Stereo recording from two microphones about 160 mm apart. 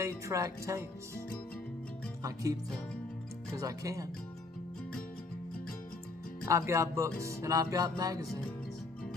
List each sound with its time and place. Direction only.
0.0 s speech: 20° right (ahead or behind)
2.2 s music: 20° right (ahead or behind)
6.4 s music: 20° right (ahead or behind)